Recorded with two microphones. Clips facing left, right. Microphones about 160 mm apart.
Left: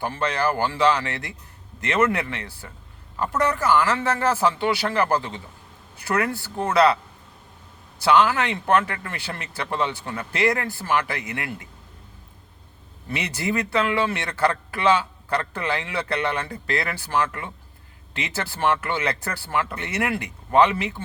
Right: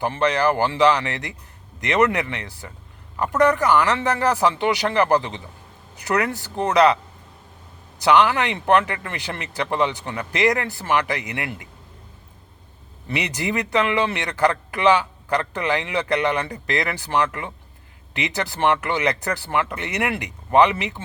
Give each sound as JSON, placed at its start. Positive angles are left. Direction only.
{"t": 0.0, "sound": "a man's voice", "side_deg": -15}
{"t": 13.1, "sound": "a man's voice", "side_deg": -15}